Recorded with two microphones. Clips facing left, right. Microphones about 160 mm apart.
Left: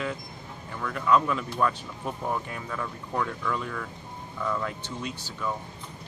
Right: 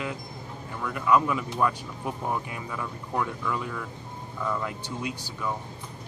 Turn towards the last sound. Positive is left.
turn(degrees=-10)  # may be behind; listen again after turning